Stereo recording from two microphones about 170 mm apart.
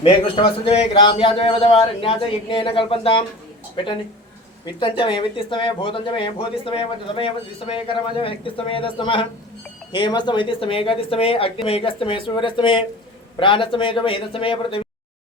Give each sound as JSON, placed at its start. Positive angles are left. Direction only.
{"t": 0.0, "sound": "a man's voice", "side_deg": 30}